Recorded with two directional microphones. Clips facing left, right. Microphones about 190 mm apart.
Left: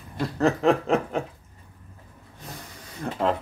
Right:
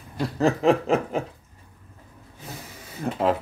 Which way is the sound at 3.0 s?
5° right (ahead or behind).